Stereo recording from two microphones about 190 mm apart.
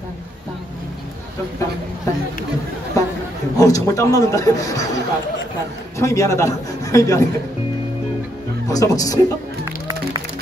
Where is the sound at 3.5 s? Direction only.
20° left (ahead or behind).